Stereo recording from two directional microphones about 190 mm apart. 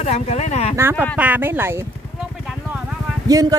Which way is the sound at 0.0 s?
35° left (ahead or behind).